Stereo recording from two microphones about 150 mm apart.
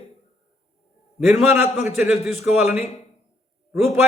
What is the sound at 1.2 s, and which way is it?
Speech, 15° right (ahead or behind).